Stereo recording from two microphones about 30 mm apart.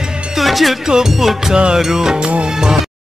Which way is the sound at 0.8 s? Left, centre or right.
Right.